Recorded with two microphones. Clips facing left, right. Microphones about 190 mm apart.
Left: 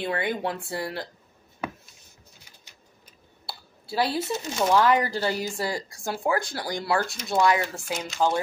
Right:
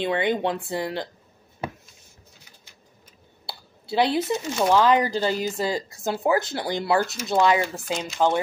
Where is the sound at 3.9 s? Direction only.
20° right (ahead or behind).